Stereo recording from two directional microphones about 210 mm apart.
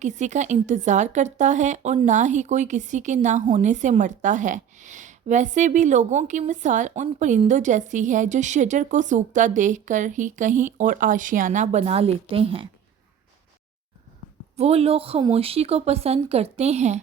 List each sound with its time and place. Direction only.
0.0 s a woman's voice: 35° right (ahead or behind)
14.5 s speech: 30° right (ahead or behind)